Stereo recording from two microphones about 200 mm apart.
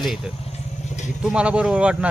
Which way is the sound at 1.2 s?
5° right (ahead or behind).